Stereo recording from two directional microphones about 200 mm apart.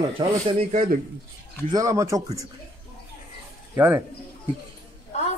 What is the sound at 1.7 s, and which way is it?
Speech, 15° right (ahead or behind).